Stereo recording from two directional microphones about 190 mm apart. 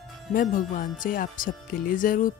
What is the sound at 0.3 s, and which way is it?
Speech, 45° left (ahead or behind).